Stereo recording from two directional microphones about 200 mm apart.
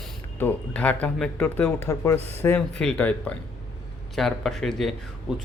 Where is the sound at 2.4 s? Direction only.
5° left (ahead or behind).